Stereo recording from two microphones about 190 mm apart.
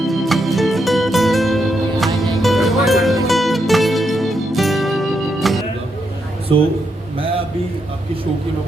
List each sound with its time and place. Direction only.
0.0 s music: centre (ahead or behind)